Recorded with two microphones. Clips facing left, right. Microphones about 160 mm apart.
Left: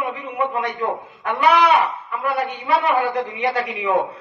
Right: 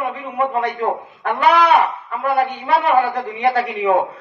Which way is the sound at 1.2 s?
55° right (ahead or behind).